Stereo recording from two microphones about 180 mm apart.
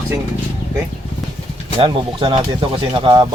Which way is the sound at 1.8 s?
30° right (ahead or behind).